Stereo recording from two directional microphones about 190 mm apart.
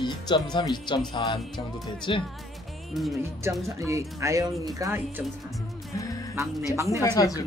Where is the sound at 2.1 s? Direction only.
25° left (ahead or behind).